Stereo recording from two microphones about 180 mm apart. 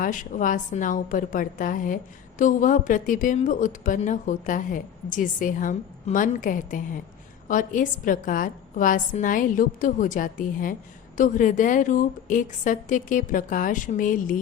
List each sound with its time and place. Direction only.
0.0 s a woman's voice: 45° left (ahead or behind)